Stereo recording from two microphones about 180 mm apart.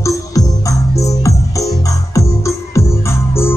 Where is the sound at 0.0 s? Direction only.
20° left (ahead or behind).